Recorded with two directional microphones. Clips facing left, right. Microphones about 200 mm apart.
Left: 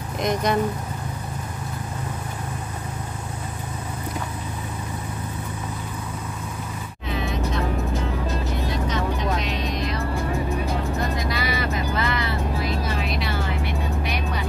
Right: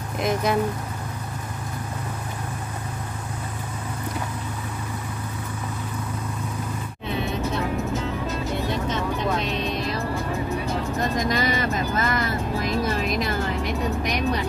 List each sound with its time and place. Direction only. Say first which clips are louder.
0.2 s speech: even; 5° right (ahead or behind)
11.2 s vehicle: right 3 dB; 45° right (ahead or behind)